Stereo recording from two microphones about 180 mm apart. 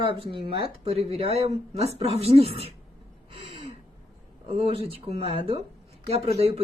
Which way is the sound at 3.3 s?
30° right (ahead or behind).